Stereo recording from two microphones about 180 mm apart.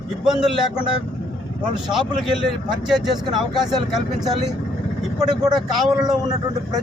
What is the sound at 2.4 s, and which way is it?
Speech, 5° right (ahead or behind).